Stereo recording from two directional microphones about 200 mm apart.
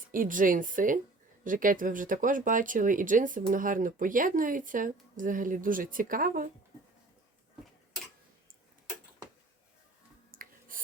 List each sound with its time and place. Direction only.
0.1 s speech: 45° right (ahead or behind)
10.3 s music: 45° right (ahead or behind)